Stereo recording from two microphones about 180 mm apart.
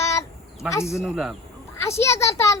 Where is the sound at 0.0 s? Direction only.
15° left (ahead or behind).